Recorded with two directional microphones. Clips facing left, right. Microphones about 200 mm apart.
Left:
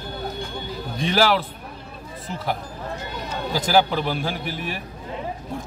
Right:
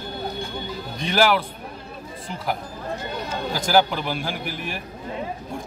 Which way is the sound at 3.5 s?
Centre (ahead or behind).